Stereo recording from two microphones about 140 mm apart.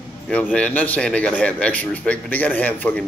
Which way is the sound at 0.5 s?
10° left (ahead or behind).